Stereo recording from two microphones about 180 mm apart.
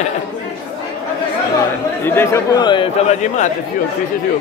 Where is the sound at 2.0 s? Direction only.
15° left (ahead or behind).